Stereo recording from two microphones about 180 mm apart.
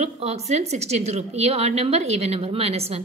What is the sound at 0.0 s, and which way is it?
A woman's voice, 35° right (ahead or behind).